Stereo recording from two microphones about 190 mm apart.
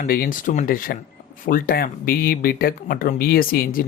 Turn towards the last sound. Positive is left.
turn(degrees=50)  # may be behind; listen again after turning